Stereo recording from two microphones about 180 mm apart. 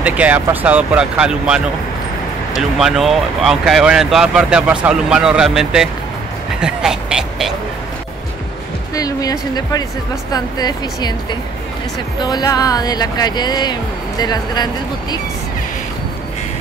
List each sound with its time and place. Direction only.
0.0 s speech: 10° right (ahead or behind)
2.8 s speech: centre (ahead or behind)
8.9 s speech: 20° left (ahead or behind)
12.2 s speech: 20° left (ahead or behind)